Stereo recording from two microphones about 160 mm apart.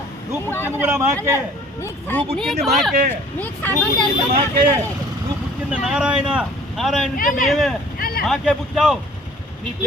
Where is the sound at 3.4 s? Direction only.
10° left (ahead or behind).